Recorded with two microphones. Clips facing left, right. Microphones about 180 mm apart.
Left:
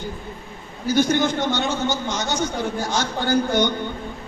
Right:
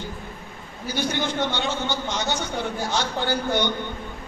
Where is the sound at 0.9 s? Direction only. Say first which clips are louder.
Left 7 dB; 45° left (ahead or behind).